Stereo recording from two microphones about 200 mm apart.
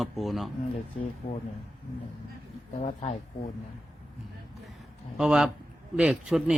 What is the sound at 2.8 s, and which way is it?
Speech, 35° left (ahead or behind).